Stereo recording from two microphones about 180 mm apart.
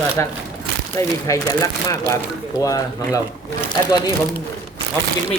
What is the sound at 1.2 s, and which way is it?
Speech, 20° left (ahead or behind).